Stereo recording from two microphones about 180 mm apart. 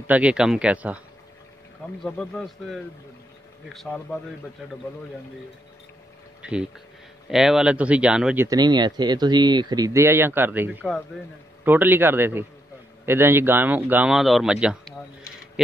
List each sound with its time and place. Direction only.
0.0 s a man's voice: 10° right (ahead or behind)
2.0 s speech: 5° left (ahead or behind)
6.4 s speech: 5° right (ahead or behind)
8.5 s a man's voice: 25° right (ahead or behind); by 15.0 s 5° right (ahead or behind)